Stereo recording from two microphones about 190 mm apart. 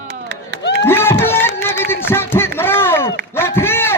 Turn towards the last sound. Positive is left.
turn(degrees=10)  # may be behind; listen again after turning